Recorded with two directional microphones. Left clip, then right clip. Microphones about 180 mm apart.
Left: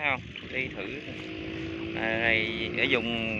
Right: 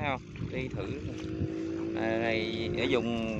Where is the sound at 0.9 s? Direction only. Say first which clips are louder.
Left 1 dB; 60° right (ahead or behind).